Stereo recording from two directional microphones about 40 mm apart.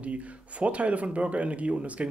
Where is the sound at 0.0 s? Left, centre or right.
Right.